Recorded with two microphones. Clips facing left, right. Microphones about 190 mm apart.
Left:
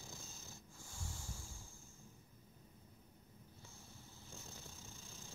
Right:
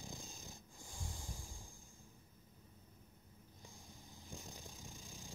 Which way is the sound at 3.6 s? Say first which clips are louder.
Right 3 dB; 15° right (ahead or behind).